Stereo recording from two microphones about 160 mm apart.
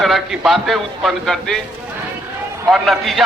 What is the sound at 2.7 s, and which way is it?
Speech, centre (ahead or behind).